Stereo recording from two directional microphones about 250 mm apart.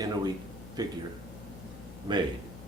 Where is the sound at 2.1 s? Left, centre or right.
Centre.